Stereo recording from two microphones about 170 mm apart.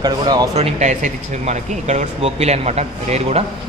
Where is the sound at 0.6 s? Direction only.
40° right (ahead or behind).